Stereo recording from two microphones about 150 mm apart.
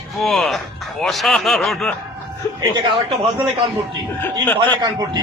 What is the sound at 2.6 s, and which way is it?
Speech, 30° right (ahead or behind).